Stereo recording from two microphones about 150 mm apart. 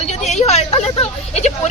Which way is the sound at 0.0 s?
50° left (ahead or behind).